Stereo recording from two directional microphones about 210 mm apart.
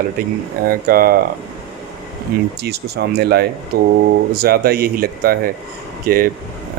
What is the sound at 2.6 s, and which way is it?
Speech, 50° right (ahead or behind).